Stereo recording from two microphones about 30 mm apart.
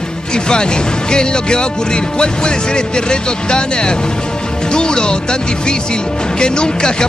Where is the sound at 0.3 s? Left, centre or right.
Left.